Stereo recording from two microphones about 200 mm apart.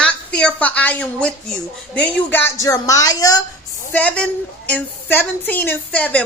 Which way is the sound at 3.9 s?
5° left (ahead or behind).